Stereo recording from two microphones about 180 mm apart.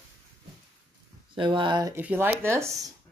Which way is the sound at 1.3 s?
25° right (ahead or behind).